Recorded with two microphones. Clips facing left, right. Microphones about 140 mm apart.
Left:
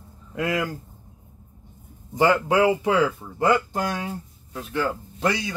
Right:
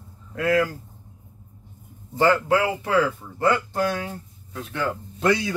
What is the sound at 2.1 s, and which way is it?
Speech, 15° left (ahead or behind).